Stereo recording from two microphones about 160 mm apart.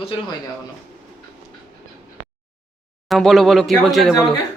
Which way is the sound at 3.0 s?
Centre (ahead or behind).